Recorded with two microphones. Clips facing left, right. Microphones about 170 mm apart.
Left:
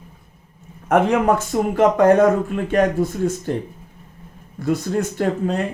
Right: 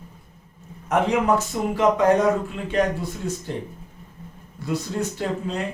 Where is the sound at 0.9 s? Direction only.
55° left (ahead or behind).